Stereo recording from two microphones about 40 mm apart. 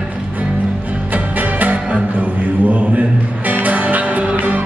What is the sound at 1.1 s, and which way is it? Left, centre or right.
Music, right.